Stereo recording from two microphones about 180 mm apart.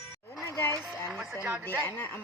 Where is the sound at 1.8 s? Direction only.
10° left (ahead or behind).